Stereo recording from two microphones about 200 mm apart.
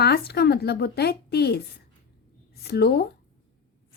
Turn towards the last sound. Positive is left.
turn(degrees=50)  # may be behind; listen again after turning